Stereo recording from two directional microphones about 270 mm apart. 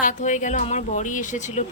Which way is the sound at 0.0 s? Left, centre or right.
Left.